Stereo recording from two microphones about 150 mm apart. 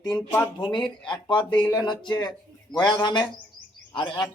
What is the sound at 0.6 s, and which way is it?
Speech, 30° left (ahead or behind).